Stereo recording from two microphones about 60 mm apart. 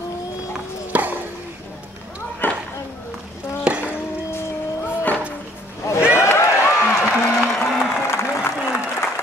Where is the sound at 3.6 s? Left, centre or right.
Right.